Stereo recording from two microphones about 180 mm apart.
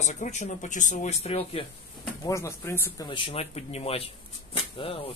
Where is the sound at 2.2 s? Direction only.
15° left (ahead or behind).